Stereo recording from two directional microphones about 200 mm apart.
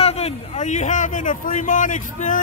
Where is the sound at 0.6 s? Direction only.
35° left (ahead or behind).